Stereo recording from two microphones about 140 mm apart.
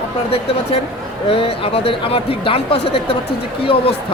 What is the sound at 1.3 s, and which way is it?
Speech, 40° left (ahead or behind).